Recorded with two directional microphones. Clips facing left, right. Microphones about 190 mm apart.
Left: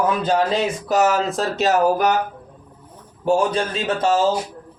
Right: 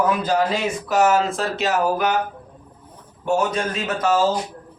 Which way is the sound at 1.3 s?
40° left (ahead or behind).